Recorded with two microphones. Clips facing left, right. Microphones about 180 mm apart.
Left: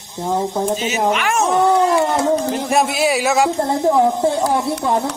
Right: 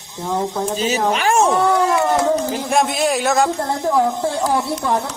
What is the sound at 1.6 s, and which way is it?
Speech, 30° left (ahead or behind).